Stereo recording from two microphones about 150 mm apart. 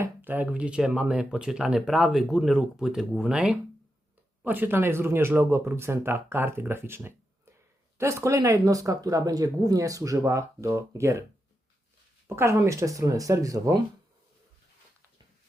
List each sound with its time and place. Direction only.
0.0 s speech: 10° right (ahead or behind)
12.3 s speech: 20° right (ahead or behind)